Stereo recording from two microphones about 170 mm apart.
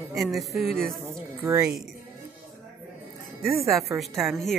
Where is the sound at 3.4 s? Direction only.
Centre (ahead or behind).